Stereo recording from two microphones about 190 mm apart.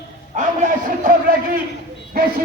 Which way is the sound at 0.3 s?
45° right (ahead or behind).